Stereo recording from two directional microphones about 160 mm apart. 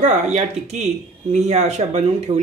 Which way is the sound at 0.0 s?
45° right (ahead or behind).